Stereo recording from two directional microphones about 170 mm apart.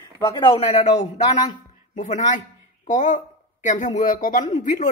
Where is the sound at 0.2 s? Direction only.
30° left (ahead or behind).